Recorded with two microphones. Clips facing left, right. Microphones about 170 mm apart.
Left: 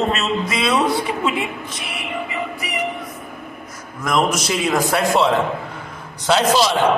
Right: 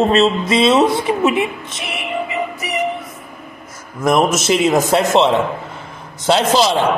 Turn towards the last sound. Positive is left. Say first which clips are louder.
# right 2 dB
turn(degrees=-25)  # may be behind; listen again after turning